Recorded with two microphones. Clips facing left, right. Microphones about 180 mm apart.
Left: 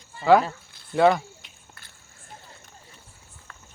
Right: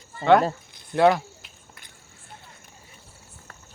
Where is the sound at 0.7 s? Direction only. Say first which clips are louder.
Right 2 dB; 20° right (ahead or behind).